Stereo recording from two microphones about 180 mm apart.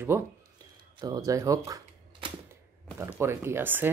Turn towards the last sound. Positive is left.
turn(degrees=-10)  # may be behind; listen again after turning